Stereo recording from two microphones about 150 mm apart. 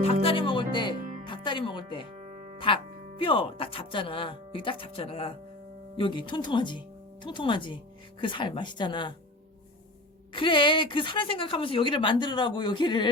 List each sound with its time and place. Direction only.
0.0 s a woman's voice: 40° left (ahead or behind)
10.3 s a woman's voice: 35° left (ahead or behind)